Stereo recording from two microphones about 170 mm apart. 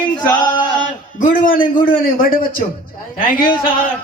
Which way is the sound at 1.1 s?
55° left (ahead or behind).